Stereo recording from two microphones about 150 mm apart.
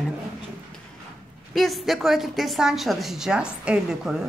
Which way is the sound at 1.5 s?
Centre (ahead or behind).